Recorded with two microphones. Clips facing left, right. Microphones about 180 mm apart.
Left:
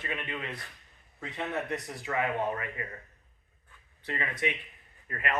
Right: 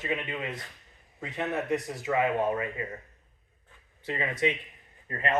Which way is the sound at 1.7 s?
20° right (ahead or behind).